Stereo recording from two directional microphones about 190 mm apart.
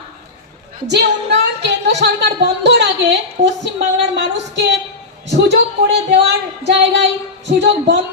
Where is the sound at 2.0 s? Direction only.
65° right (ahead or behind).